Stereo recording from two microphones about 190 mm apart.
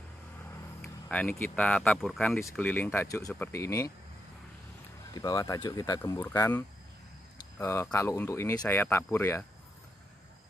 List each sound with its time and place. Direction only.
0.8 s speech: 5° left (ahead or behind)
5.1 s speech: 20° left (ahead or behind)